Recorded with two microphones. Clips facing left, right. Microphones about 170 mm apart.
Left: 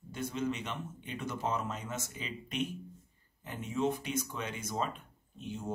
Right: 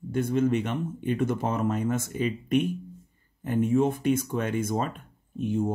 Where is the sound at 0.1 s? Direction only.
55° right (ahead or behind).